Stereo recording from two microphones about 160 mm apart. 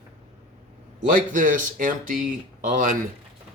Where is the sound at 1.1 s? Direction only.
55° right (ahead or behind).